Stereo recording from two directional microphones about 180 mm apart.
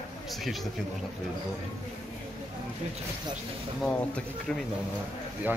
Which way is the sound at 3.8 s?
5° left (ahead or behind).